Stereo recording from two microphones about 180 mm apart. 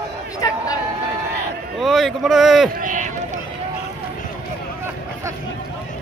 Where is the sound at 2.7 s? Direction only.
45° right (ahead or behind).